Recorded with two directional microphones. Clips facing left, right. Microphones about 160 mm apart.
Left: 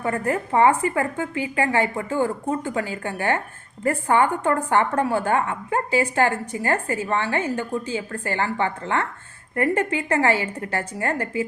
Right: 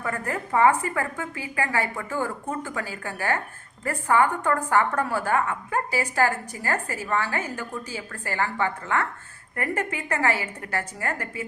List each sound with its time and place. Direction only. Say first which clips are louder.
0.0 s a woman's voice: left 6 dB; 25° left (ahead or behind)